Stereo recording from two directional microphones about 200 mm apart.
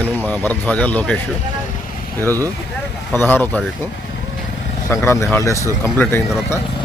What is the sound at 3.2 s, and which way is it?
Speech, 10° left (ahead or behind).